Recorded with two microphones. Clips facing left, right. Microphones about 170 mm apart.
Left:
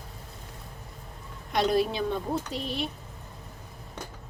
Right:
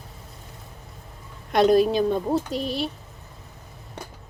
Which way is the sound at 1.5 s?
50° right (ahead or behind).